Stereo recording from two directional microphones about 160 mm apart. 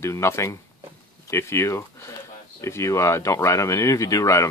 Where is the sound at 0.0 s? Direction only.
15° left (ahead or behind).